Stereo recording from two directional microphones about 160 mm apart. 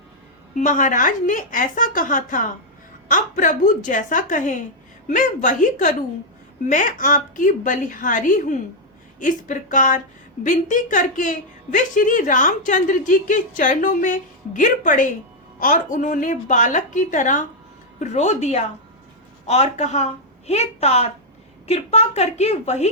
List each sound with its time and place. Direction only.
0.5 s a woman's voice: 55° left (ahead or behind)